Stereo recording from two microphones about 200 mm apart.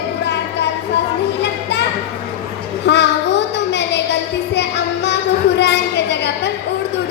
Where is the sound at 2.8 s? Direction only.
60° left (ahead or behind).